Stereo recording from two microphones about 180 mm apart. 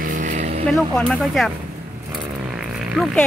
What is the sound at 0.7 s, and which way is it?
Speech, centre (ahead or behind).